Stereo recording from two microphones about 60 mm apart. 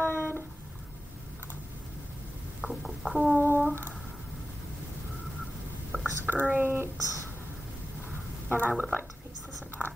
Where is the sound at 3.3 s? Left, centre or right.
Left.